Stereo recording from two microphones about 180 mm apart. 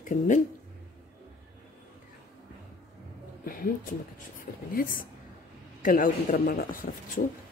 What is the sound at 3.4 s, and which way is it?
Speech, 50° left (ahead or behind).